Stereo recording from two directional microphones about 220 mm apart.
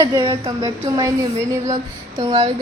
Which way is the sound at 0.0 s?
20° right (ahead or behind).